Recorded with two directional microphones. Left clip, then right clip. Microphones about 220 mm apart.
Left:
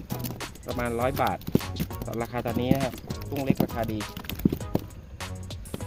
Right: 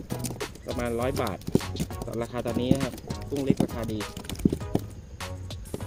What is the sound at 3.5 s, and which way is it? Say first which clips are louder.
Speech: even; 40° left (ahead or behind).